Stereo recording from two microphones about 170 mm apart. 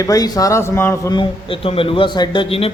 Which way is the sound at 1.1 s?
30° left (ahead or behind).